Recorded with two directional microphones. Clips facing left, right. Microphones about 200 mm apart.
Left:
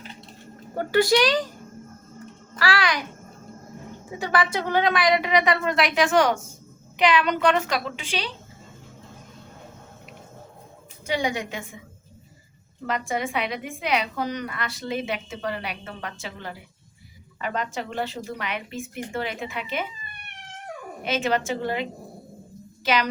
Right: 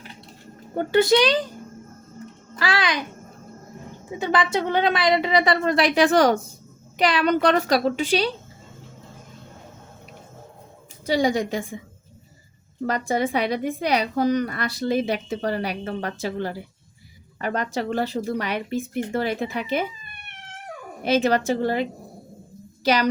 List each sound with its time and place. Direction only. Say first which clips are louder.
0.8 s speech: right 2 dB; 20° right (ahead or behind)
2.6 s speech: even; 20° right (ahead or behind)
4.2 s a woman's voice: right 2 dB; 20° right (ahead or behind); by 8.3 s 40° right (ahead or behind)
11.0 s a woman's voice: right 5 dB; 35° right (ahead or behind)
12.8 s a woman's voice: right 4 dB; 35° right (ahead or behind)
21.0 s a woman's voice: right 5 dB; 35° right (ahead or behind)